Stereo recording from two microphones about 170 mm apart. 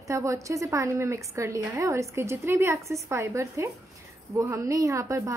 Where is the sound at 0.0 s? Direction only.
20° right (ahead or behind).